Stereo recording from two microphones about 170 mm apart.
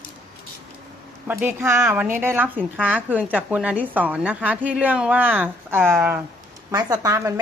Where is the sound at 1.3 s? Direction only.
15° right (ahead or behind).